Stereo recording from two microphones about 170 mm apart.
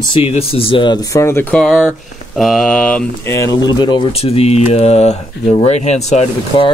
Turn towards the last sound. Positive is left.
turn(degrees=35)  # may be behind; listen again after turning